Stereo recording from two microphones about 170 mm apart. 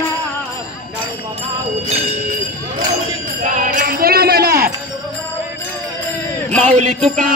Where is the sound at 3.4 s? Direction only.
50° right (ahead or behind); by 4.7 s 65° right (ahead or behind).